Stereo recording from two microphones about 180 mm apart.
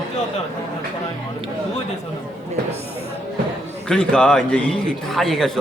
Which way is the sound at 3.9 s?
5° left (ahead or behind).